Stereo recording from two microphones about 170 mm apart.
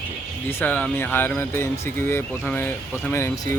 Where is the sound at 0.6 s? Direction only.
10° left (ahead or behind).